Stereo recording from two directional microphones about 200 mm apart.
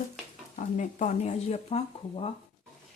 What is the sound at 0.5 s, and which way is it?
Speech, 40° left (ahead or behind).